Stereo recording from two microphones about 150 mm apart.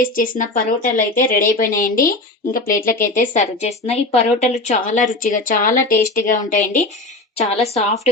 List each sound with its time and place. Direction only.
0.0 s speech: 65° left (ahead or behind)
5.2 s speech: 65° left (ahead or behind)
7.5 s a woman's voice: 45° left (ahead or behind)